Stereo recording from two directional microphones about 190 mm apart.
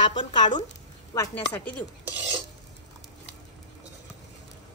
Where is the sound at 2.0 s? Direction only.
10° right (ahead or behind).